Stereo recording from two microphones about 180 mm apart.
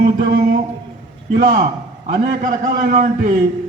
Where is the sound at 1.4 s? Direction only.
50° right (ahead or behind).